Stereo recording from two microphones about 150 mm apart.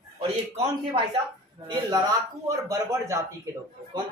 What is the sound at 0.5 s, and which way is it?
Speech, 45° right (ahead or behind).